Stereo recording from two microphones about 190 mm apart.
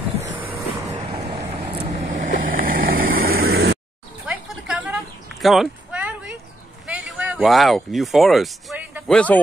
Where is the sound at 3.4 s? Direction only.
55° right (ahead or behind).